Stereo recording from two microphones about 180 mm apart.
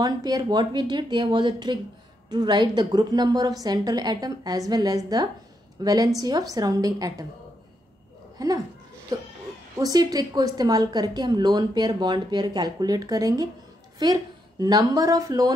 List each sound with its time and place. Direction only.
0.0 s a woman's voice: 20° right (ahead or behind)
9.8 s a woman's voice: 20° right (ahead or behind)